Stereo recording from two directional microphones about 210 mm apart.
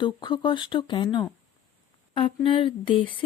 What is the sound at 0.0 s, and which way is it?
Speech, 20° left (ahead or behind).